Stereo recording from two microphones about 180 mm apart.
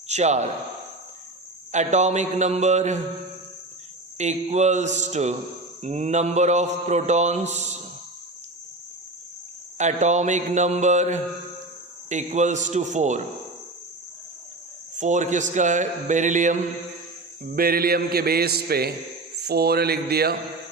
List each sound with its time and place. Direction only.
0.1 s a man's voice: 40° right (ahead or behind)
1.7 s mantra: 40° right (ahead or behind)
4.2 s mantra: 40° right (ahead or behind)
9.7 s mantra: 40° right (ahead or behind)
14.9 s a man's voice: 40° right (ahead or behind)
17.4 s a man's voice: 55° right (ahead or behind)